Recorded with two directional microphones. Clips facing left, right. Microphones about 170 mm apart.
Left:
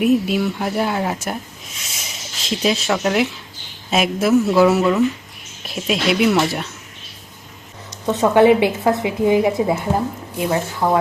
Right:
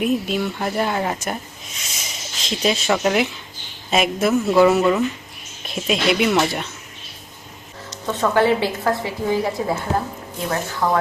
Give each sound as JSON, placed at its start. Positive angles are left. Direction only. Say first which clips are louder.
{"t": 0.0, "sound": "speech", "louder": "left 4 dB", "side_deg": 5}
{"t": 8.0, "sound": "a woman's voice", "louder": "left 5 dB", "side_deg": 20}
{"t": 10.8, "sound": "speech", "louder": "left 2 dB", "side_deg": 25}